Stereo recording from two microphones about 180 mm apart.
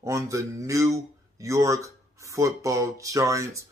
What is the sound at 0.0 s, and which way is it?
Speech, 15° right (ahead or behind).